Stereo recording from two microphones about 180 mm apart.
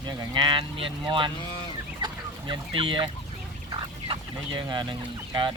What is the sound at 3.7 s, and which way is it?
Speech, 25° right (ahead or behind).